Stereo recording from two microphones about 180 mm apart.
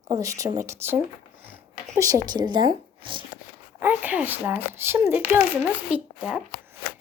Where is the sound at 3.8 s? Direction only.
10° right (ahead or behind).